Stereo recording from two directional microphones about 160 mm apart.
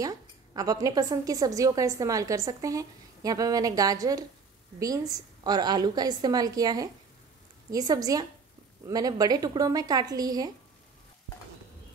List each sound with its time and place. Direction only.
0.0 s a woman's voice: 20° right (ahead or behind)